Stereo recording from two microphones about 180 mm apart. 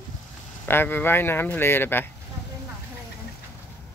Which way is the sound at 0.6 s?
10° left (ahead or behind).